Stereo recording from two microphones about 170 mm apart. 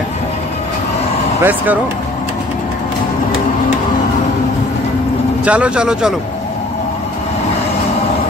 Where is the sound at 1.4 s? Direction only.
10° right (ahead or behind).